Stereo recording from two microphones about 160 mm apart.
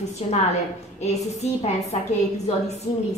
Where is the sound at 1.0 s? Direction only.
45° left (ahead or behind).